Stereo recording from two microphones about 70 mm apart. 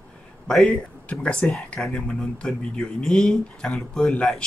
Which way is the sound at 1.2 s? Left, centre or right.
Centre.